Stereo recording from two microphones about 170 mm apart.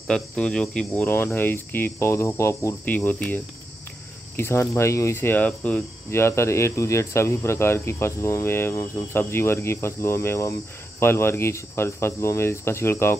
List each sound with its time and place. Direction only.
0.1 s cricket: 5° left (ahead or behind)